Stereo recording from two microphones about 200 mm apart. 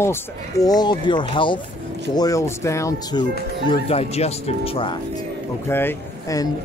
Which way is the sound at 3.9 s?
30° left (ahead or behind).